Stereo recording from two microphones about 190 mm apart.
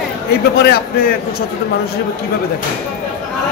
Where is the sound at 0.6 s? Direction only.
55° left (ahead or behind).